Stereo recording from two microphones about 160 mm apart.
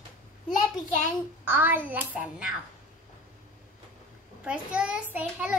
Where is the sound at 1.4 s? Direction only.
10° right (ahead or behind).